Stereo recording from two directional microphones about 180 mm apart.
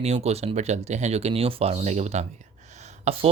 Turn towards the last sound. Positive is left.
turn(degrees=-35)  # may be behind; listen again after turning